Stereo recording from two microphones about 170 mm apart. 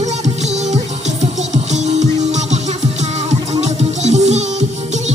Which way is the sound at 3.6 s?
40° right (ahead or behind).